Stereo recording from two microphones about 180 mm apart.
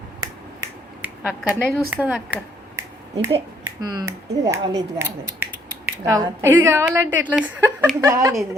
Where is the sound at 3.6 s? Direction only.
20° right (ahead or behind).